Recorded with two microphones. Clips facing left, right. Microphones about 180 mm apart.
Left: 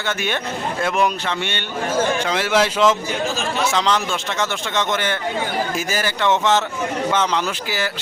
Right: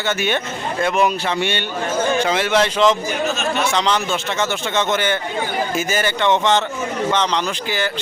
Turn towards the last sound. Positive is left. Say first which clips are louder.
# right 1 dB
turn(degrees=5)  # may be behind; listen again after turning